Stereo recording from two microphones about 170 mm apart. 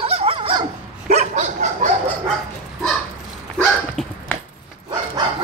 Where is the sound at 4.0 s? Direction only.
Centre (ahead or behind).